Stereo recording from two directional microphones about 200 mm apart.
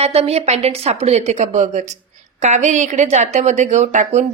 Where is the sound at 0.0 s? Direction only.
30° right (ahead or behind).